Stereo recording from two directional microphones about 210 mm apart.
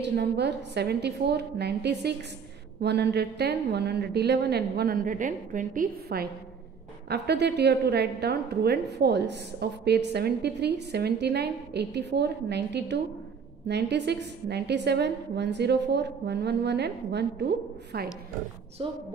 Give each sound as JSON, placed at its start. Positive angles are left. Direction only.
{"t": 0.0, "sound": "a woman's voice", "side_deg": -55}
{"t": 18.8, "sound": "a woman's voice", "side_deg": -25}